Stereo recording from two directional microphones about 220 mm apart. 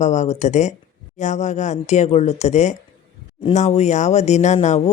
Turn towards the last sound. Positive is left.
turn(degrees=30)  # may be behind; listen again after turning